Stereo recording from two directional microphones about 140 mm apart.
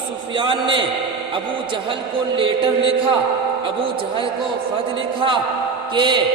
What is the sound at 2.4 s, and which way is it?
Speech, 40° right (ahead or behind).